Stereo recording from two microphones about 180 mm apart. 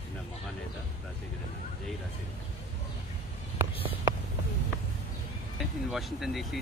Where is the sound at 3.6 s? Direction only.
15° right (ahead or behind).